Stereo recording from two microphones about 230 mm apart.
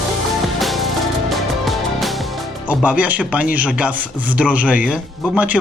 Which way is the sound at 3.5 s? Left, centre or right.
Centre.